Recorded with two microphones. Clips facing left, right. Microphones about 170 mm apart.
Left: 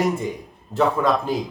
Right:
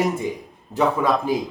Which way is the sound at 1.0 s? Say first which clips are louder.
Even; 10° right (ahead or behind).